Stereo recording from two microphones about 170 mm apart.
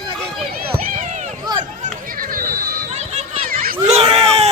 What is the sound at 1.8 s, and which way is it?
Chatter, 55° right (ahead or behind).